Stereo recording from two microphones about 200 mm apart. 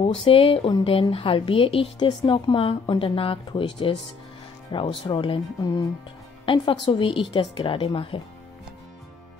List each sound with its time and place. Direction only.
0.0 s a woman's voice: 25° left (ahead or behind)